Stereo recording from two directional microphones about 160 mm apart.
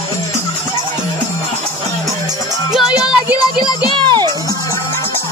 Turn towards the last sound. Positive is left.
turn(degrees=-30)  # may be behind; listen again after turning